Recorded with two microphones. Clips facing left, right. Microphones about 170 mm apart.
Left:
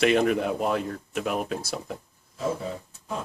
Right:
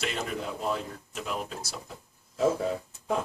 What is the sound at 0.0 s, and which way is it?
Speech, 65° left (ahead or behind).